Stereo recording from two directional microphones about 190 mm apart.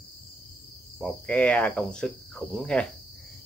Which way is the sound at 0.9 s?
5° left (ahead or behind).